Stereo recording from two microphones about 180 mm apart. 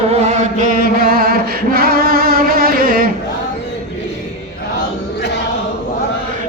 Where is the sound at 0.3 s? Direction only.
50° right (ahead or behind).